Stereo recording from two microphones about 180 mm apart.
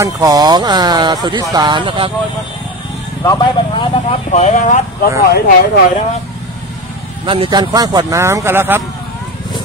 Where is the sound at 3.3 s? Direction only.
25° left (ahead or behind); by 4.8 s 40° left (ahead or behind).